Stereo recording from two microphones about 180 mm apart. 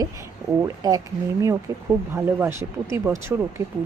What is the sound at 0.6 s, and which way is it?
Speech, 20° right (ahead or behind).